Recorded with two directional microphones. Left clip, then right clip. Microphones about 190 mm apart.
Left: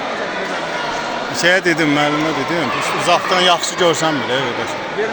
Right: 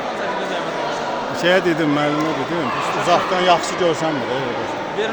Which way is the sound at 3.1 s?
15° left (ahead or behind).